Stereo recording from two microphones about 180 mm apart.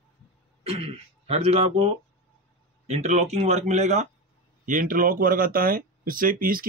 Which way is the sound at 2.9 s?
40° right (ahead or behind).